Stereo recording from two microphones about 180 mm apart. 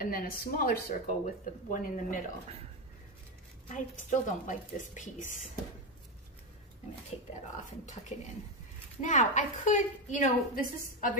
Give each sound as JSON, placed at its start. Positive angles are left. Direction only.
{"t": 0.0, "sound": "speech", "side_deg": 55}
{"t": 3.7, "sound": "speech", "side_deg": 45}
{"t": 9.0, "sound": "speech", "side_deg": 45}